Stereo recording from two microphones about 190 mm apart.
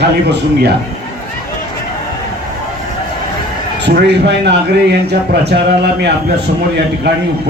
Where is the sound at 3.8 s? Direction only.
60° right (ahead or behind).